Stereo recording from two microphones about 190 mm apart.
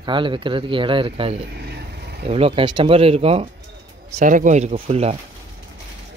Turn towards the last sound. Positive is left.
turn(degrees=-35)  # may be behind; listen again after turning